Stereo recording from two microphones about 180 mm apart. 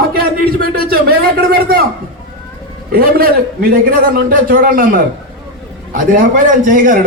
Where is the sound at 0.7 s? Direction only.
55° right (ahead or behind).